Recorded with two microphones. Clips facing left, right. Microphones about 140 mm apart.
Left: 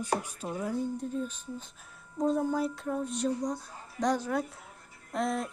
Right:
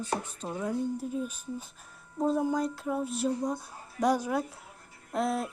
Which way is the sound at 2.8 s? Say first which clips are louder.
Right 1 dB; 5° right (ahead or behind).